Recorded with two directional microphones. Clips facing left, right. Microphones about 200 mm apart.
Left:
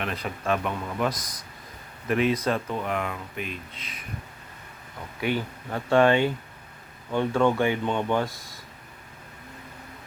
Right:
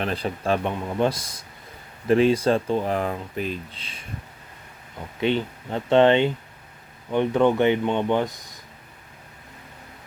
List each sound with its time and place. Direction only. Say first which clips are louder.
0.0 s speech: right 4 dB; 30° right (ahead or behind)
5.2 s speech: right 4 dB; 25° right (ahead or behind)